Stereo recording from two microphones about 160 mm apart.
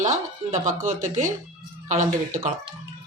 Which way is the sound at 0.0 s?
50° right (ahead or behind).